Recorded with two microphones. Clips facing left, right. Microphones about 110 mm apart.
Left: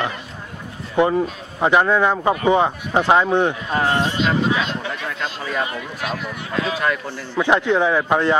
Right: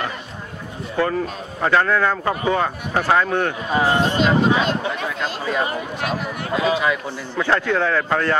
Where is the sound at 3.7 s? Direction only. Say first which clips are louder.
Right 3 dB; 5° right (ahead or behind).